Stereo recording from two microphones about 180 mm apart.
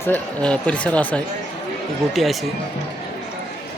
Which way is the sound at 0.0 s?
10° left (ahead or behind).